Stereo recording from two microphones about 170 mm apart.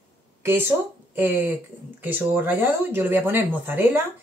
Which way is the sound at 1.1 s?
10° right (ahead or behind).